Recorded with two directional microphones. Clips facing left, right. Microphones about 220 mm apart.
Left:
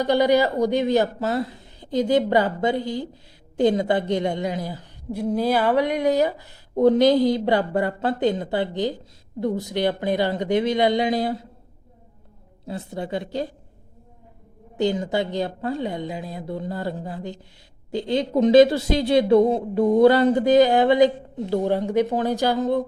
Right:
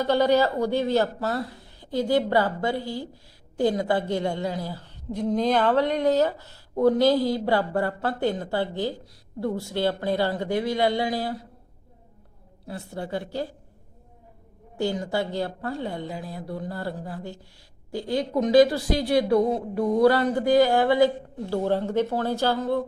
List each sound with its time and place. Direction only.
0.0 s a woman's voice: 15° left (ahead or behind)
12.6 s speech: 20° left (ahead or behind)
14.8 s speech: 20° left (ahead or behind)